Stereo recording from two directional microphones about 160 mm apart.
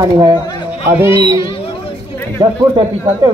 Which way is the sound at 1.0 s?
35° left (ahead or behind).